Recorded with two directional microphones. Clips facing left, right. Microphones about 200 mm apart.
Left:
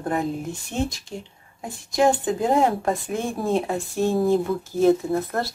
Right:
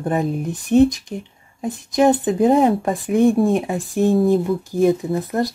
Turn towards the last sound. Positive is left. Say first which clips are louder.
# right 3 dB
turn(degrees=-15)  # may be behind; listen again after turning